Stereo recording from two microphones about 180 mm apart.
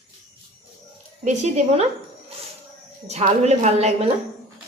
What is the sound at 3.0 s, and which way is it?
Speech, 40° right (ahead or behind).